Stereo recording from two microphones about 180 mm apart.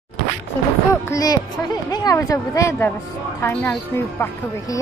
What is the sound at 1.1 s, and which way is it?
A woman's voice, 20° left (ahead or behind).